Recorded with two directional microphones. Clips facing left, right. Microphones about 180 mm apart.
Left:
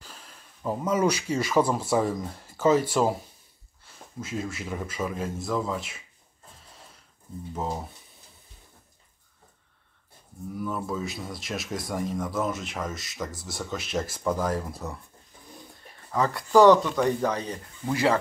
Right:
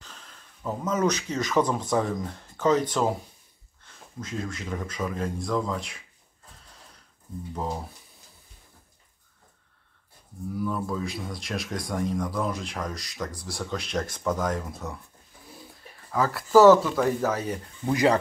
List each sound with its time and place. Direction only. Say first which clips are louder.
0.0 s speech: left 1 dB; 10° left (ahead or behind)
7.5 s speech: even; 5° left (ahead or behind)
10.5 s speech: right 2 dB; centre (ahead or behind)
17.8 s speech: right 2 dB; 20° right (ahead or behind)